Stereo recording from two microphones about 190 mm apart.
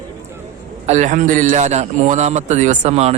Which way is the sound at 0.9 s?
40° right (ahead or behind).